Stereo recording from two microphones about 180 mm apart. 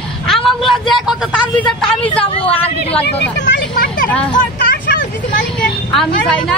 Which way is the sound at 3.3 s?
75° left (ahead or behind).